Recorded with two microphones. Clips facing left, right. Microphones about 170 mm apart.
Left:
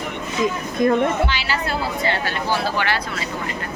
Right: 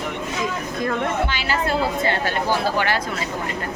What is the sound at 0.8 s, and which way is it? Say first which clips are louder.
Speech: left 8 dB; 20° left (ahead or behind).